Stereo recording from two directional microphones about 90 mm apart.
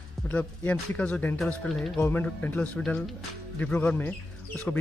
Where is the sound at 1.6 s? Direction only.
5° left (ahead or behind).